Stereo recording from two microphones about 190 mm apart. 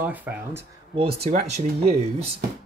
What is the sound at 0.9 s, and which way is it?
Speech, 30° right (ahead or behind).